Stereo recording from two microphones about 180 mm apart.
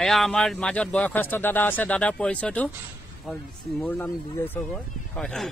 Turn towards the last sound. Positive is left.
turn(degrees=5)  # may be behind; listen again after turning